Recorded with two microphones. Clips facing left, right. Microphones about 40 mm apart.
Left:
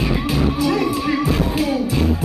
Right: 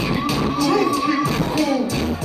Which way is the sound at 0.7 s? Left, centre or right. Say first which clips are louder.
Right 1 dB; centre.